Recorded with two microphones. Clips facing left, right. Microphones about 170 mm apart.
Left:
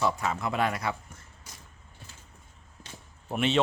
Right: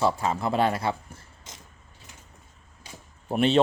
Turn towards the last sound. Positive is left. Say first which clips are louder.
# right 5 dB
turn(degrees=-35)  # may be behind; listen again after turning